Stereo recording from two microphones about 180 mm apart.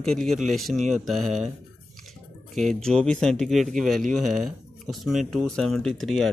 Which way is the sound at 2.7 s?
Centre (ahead or behind).